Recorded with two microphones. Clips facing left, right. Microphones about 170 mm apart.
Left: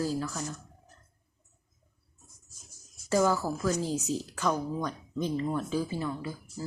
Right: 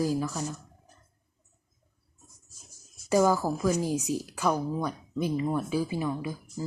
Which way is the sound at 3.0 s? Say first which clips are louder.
Right 3 dB; 15° right (ahead or behind).